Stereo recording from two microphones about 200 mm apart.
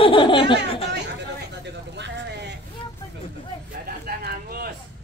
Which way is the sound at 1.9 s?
60° right (ahead or behind).